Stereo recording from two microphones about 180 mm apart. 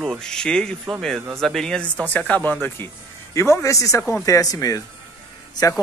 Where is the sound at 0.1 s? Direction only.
5° left (ahead or behind).